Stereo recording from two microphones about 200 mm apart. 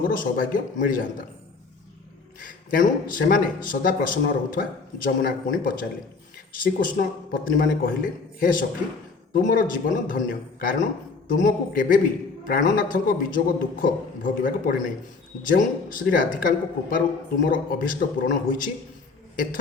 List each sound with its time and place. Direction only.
0.1 s speech: 45° left (ahead or behind)
2.4 s speech: 40° left (ahead or behind)